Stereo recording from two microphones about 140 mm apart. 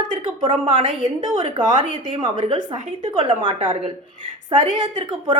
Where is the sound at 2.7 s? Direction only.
35° right (ahead or behind).